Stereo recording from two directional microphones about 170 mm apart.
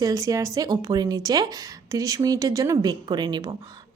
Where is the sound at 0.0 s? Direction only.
20° right (ahead or behind).